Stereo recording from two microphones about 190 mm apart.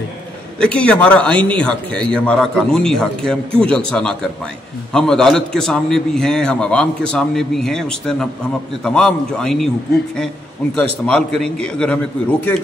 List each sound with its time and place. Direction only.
0.6 s a man's voice: 5° left (ahead or behind)
10.8 s a man's voice: 5° left (ahead or behind)